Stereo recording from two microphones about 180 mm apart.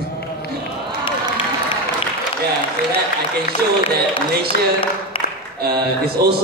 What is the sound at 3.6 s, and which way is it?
Speech, 60° right (ahead or behind).